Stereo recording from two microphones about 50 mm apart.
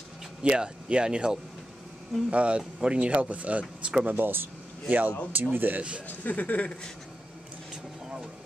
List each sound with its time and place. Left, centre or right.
0.4 s speech: centre
4.0 s speech: right
4.8 s speech: right
5.8 s speech: right
6.0 s speech: left